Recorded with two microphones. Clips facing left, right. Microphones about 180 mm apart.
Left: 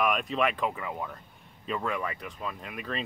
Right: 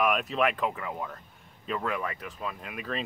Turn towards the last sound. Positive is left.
turn(degrees=0)  # may be behind; listen again after turning